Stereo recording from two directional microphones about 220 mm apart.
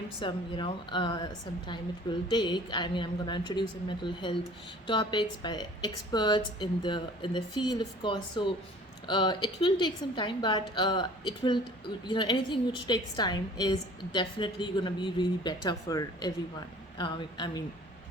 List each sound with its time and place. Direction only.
0.2 s a woman's voice: 20° left (ahead or behind)